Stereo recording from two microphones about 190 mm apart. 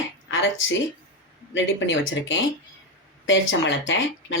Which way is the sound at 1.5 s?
75° left (ahead or behind).